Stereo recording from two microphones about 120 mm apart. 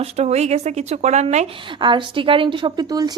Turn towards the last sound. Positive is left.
turn(degrees=-35)  # may be behind; listen again after turning